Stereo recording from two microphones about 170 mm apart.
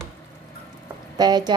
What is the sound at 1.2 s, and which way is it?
Speech, 25° right (ahead or behind).